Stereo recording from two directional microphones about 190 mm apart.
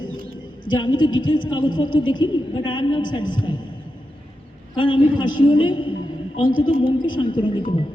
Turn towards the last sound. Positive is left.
turn(degrees=25)  # may be behind; listen again after turning